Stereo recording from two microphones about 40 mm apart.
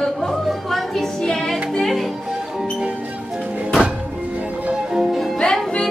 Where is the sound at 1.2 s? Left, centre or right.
Centre.